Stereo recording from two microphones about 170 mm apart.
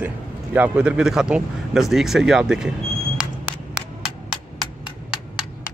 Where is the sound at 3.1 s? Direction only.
5° right (ahead or behind).